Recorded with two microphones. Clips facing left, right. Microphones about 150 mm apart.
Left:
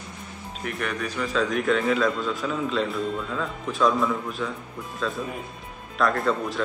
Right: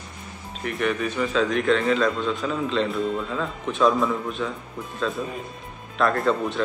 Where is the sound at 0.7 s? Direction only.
Centre (ahead or behind).